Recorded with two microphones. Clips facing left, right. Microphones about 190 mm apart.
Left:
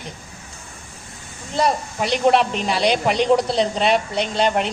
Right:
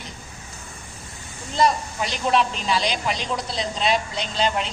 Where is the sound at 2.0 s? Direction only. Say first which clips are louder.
Left 8 dB; 60° left (ahead or behind).